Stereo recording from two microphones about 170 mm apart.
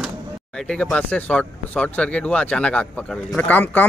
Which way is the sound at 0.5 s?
5° left (ahead or behind).